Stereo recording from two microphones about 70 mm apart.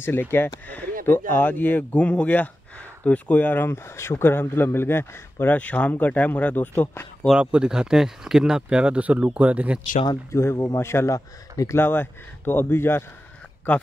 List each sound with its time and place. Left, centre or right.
0.0 s speech: left
7.3 s speech: centre
10.3 s speech: left
11.1 s speech: left
11.7 s speech: left
13.7 s speech: left